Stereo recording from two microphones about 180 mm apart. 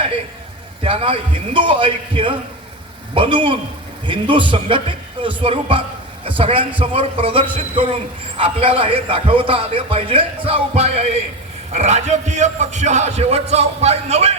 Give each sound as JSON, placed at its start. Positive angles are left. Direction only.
{"t": 0.9, "sound": "a man's voice", "side_deg": -30}